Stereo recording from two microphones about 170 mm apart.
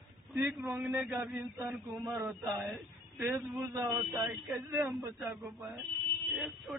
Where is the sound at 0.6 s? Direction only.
15° right (ahead or behind).